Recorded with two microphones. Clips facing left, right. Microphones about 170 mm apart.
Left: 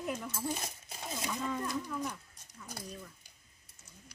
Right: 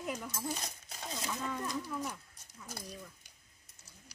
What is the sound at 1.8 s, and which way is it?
Speech, 10° right (ahead or behind).